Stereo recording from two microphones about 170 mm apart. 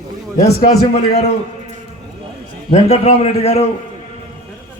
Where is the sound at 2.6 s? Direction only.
35° left (ahead or behind).